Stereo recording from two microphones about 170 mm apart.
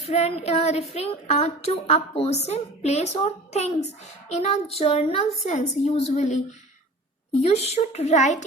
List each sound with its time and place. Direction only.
0.0 s a woman's voice: 40° left (ahead or behind)
7.4 s a woman's voice: 40° left (ahead or behind)